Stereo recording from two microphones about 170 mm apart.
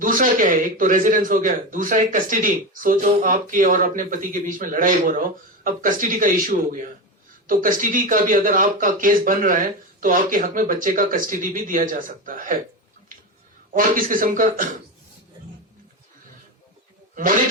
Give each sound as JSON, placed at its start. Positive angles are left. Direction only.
{"t": 0.0, "sound": "speech", "side_deg": -50}
{"t": 13.7, "sound": "speech", "side_deg": -55}